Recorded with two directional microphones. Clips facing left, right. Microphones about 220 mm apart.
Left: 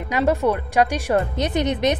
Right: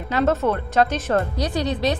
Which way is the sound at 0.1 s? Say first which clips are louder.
Left 1 dB; 15° left (ahead or behind).